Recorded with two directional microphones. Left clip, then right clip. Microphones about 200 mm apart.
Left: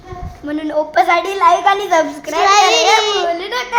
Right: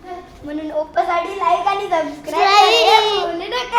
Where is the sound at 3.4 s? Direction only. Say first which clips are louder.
Left 2 dB; 45° left (ahead or behind).